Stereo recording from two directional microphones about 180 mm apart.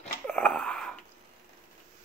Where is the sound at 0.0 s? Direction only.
5° left (ahead or behind).